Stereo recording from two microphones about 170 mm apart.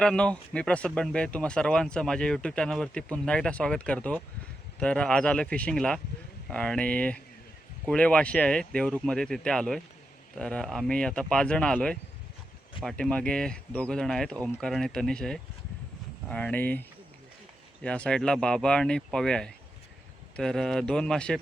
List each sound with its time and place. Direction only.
0.0 s speech: 5° left (ahead or behind)
17.8 s speech: 5° left (ahead or behind)